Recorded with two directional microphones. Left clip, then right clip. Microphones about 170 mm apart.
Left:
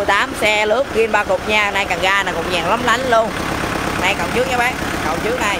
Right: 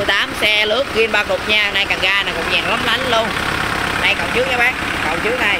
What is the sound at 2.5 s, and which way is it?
Speech, 15° left (ahead or behind).